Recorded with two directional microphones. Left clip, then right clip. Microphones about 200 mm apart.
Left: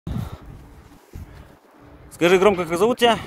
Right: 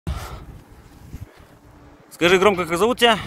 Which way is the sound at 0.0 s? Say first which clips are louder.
Right 1 dB; 15° right (ahead or behind).